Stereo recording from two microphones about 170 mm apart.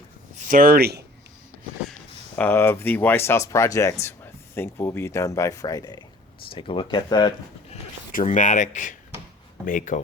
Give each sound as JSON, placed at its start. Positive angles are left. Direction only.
{"t": 0.3, "sound": "speech", "side_deg": -55}
{"t": 2.3, "sound": "speech", "side_deg": 10}
{"t": 8.1, "sound": "speech", "side_deg": 50}